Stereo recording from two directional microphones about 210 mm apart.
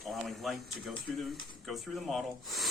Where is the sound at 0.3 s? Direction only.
Centre (ahead or behind).